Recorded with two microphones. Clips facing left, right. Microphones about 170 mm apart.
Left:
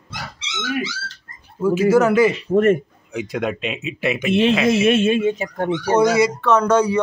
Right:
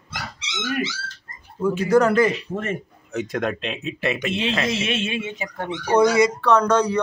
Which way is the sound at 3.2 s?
5° left (ahead or behind).